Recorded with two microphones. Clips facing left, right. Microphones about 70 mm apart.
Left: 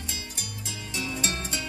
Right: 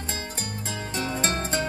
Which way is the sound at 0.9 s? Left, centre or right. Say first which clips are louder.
Right 4 dB; right.